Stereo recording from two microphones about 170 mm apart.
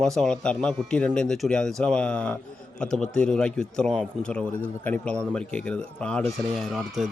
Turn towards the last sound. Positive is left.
turn(degrees=0)  # may be behind; listen again after turning